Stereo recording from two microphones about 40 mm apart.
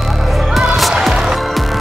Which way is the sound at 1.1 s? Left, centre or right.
Centre.